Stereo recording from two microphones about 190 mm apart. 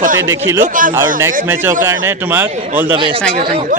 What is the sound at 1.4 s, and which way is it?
A man's voice, 10° right (ahead or behind).